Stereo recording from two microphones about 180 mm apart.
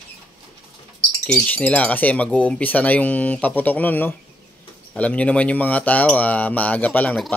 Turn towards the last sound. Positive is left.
turn(degrees=10)  # may be behind; listen again after turning